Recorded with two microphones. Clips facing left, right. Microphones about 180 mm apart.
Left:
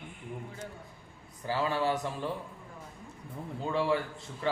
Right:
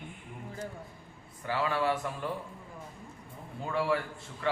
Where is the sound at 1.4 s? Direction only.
35° left (ahead or behind).